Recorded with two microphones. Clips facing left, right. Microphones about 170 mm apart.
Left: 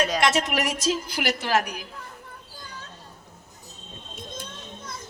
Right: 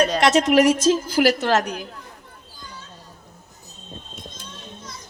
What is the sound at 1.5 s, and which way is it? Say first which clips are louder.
Speech: right 2 dB; 5° left (ahead or behind).